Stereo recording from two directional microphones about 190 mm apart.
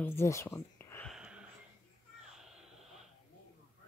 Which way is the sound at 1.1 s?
5° right (ahead or behind).